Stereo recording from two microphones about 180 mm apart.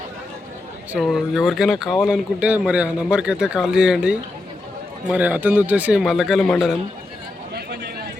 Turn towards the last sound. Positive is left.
turn(degrees=-60)  # may be behind; listen again after turning